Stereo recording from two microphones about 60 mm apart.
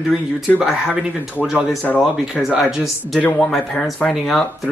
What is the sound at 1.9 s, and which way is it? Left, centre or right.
Speech, left.